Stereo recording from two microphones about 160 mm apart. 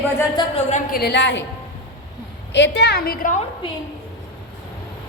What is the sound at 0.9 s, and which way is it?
Speech, 85° left.